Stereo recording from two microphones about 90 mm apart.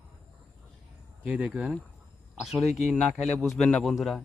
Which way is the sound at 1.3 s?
10° right (ahead or behind).